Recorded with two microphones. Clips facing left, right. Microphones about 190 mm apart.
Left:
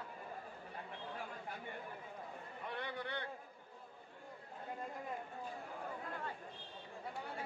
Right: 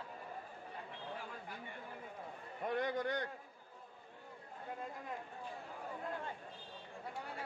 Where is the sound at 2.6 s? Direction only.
45° right (ahead or behind).